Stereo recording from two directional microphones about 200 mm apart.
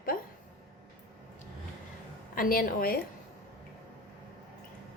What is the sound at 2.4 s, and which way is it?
Speech, 45° left (ahead or behind).